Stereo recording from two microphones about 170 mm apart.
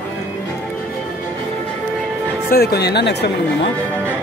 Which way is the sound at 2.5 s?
70° left (ahead or behind).